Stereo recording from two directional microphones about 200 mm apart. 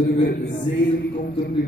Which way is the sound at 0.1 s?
40° left (ahead or behind).